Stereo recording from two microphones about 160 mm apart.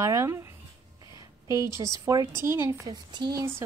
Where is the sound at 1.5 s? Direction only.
20° right (ahead or behind).